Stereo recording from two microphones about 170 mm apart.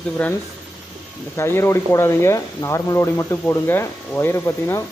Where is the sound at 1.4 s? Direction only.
15° left (ahead or behind).